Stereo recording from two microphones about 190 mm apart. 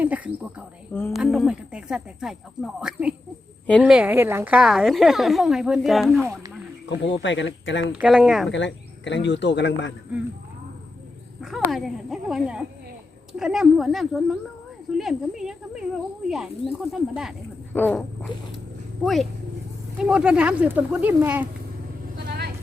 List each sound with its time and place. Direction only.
0.0 s a woman's voice: 10° right (ahead or behind)
6.8 s speech: 70° left (ahead or behind)
7.9 s a woman's voice: 5° right (ahead or behind)
8.4 s speech: 70° left (ahead or behind)
11.3 s a woman's voice: centre (ahead or behind)
17.7 s a woman's voice: 10° left (ahead or behind); by 21.4 s 10° right (ahead or behind)